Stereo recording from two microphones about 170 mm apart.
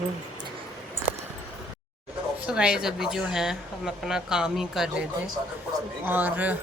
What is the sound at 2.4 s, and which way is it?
A woman's voice, 5° right (ahead or behind).